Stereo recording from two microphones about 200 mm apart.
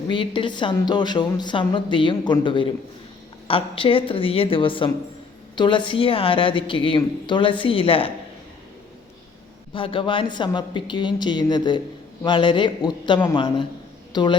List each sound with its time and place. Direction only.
0.1 s a woman's voice: 25° left (ahead or behind)
9.7 s a woman's voice: 25° left (ahead or behind)